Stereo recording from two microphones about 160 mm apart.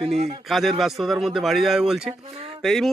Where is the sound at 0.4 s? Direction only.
Centre (ahead or behind).